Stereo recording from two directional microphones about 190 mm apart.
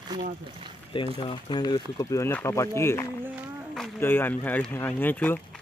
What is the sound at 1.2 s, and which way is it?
Speech, 25° left (ahead or behind).